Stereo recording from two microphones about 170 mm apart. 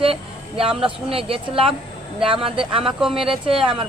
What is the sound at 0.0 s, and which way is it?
Vehicle, 35° right (ahead or behind).